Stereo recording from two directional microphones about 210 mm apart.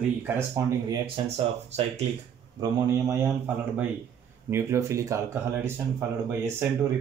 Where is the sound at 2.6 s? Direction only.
15° right (ahead or behind).